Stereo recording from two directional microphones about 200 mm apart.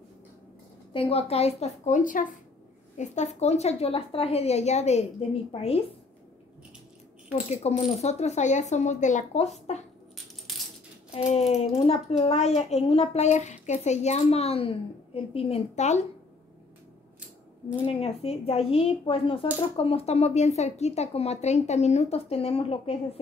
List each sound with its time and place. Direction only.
0.9 s a child's voice: 30° left (ahead or behind)
7.3 s a child's voice: 35° left (ahead or behind)
11.1 s a child's voice: 30° left (ahead or behind)
17.7 s a child's voice: 30° left (ahead or behind)